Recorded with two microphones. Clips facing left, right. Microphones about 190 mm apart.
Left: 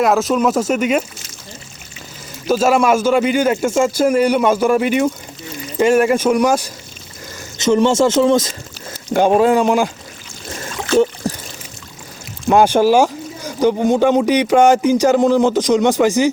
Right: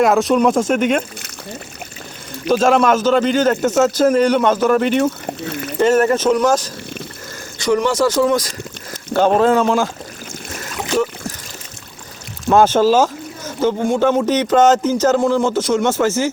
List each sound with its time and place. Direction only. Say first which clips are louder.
0.0 s speech: right 1 dB; centre (ahead or behind)
2.5 s speech: even; 5° left (ahead or behind)
5.2 s a sound: right 6 dB; 65° right (ahead or behind)
5.8 s speech: left 1 dB; 10° left (ahead or behind)
7.6 s speech: left 3 dB; 25° left (ahead or behind)
9.1 s speech: left 1 dB; 10° left (ahead or behind)
10.9 s speech: left 5 dB; 15° right (ahead or behind)
12.5 s speech: left 1 dB; 15° left (ahead or behind)